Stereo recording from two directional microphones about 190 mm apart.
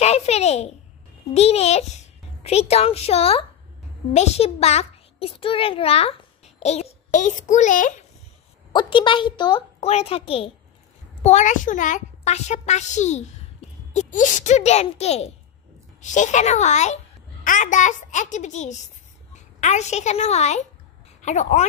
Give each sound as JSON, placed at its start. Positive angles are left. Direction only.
{"t": 0.0, "sound": "a sound", "side_deg": 35}
{"t": 1.3, "sound": "a child's voice", "side_deg": 35}
{"t": 8.7, "sound": "a child's voice", "side_deg": 25}